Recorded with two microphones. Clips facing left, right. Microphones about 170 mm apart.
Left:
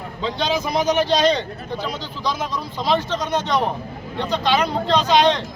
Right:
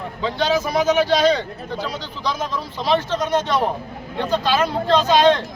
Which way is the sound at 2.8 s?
10° right (ahead or behind).